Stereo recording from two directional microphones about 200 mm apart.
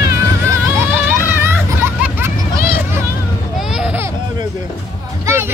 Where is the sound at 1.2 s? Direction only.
10° right (ahead or behind).